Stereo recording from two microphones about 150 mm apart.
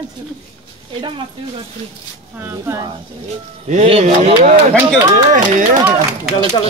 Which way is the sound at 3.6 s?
45° right (ahead or behind).